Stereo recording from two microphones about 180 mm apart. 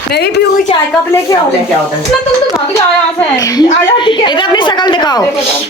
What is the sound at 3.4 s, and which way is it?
A woman's voice, 20° left (ahead or behind).